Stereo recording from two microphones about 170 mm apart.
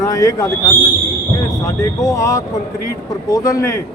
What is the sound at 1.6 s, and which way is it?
Speech, 20° left (ahead or behind).